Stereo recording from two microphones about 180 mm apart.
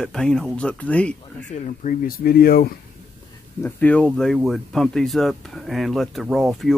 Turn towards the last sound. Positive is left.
turn(degrees=0)  # may be behind; listen again after turning